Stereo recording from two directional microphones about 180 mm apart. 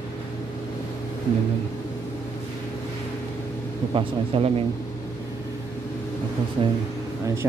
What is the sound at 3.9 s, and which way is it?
Speech, 30° right (ahead or behind).